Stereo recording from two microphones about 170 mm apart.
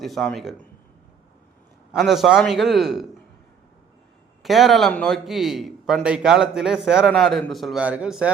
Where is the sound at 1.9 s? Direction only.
Centre (ahead or behind).